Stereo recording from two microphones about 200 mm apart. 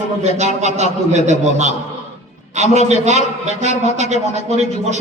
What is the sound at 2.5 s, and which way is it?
A man's voice, 35° right (ahead or behind).